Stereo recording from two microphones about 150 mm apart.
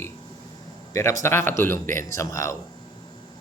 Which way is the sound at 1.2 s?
15° left (ahead or behind).